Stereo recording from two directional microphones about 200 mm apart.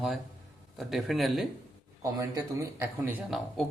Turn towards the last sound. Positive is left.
turn(degrees=-5)  # may be behind; listen again after turning